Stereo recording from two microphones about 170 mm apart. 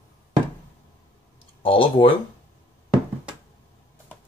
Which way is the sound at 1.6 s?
30° left (ahead or behind).